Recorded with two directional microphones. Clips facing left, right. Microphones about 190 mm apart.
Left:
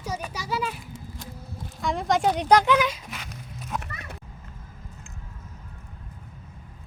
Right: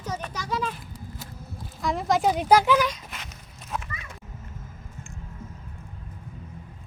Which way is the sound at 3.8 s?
65° left (ahead or behind).